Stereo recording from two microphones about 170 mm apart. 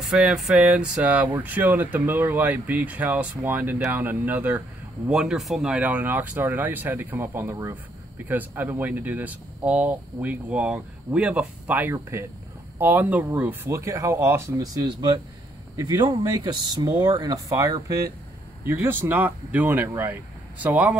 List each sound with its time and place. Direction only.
0.0 s speech: 5° right (ahead or behind)